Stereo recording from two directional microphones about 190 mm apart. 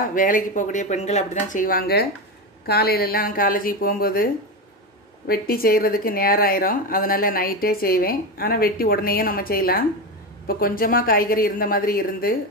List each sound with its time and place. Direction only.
0.0 s speech: 45° left (ahead or behind)